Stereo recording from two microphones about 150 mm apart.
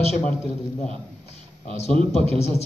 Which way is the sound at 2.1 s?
45° left (ahead or behind).